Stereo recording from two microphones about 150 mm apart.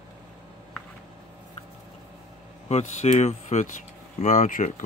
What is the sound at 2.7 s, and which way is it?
Speech, 45° left (ahead or behind).